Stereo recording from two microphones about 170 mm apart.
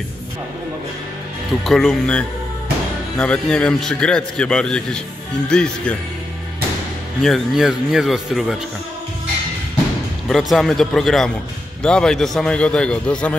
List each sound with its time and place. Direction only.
1.6 s a man's voice: centre (ahead or behind)
7.2 s a man's voice: centre (ahead or behind)
10.2 s a man's voice: centre (ahead or behind)